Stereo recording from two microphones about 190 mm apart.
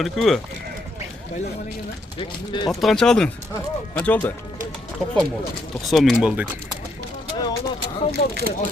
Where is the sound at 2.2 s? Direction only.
25° left (ahead or behind).